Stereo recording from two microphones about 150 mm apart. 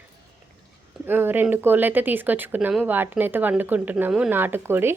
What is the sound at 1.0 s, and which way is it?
A woman's voice, 15° right (ahead or behind).